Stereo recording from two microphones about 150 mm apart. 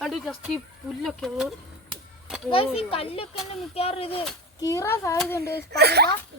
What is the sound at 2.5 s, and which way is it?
A child's voice, 40° left (ahead or behind).